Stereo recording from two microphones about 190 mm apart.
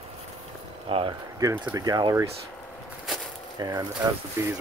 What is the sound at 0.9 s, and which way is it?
Speech, 30° right (ahead or behind).